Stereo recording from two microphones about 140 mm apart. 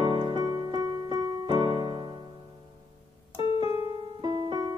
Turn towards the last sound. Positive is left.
turn(degrees=-30)  # may be behind; listen again after turning